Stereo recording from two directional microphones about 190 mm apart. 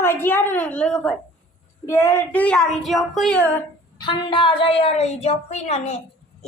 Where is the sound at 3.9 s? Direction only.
25° left (ahead or behind).